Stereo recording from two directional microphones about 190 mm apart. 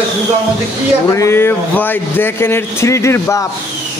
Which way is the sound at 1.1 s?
15° left (ahead or behind).